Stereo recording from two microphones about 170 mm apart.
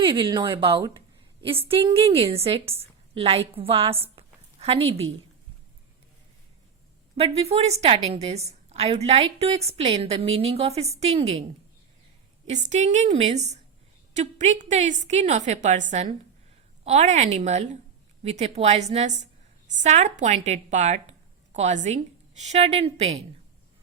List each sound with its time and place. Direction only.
0.0 s a woman's voice: 30° right (ahead or behind)
7.2 s a woman's voice: 35° right (ahead or behind)
12.5 s a woman's voice: 45° right (ahead or behind)